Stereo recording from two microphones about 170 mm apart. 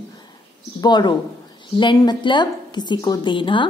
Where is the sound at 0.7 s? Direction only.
25° left (ahead or behind).